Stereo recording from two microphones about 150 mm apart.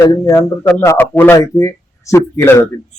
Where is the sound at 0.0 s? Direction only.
25° left (ahead or behind).